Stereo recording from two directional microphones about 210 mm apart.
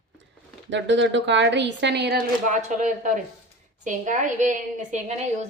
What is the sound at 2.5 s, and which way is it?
A woman's voice, 35° right (ahead or behind).